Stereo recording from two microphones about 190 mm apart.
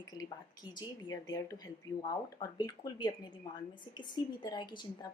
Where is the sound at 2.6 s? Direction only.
20° left (ahead or behind).